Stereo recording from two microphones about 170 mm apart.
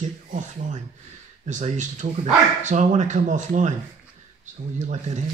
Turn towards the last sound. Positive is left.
turn(degrees=-45)  # may be behind; listen again after turning